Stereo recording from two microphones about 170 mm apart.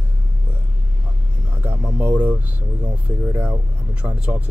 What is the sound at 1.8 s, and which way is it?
Speech, 10° right (ahead or behind).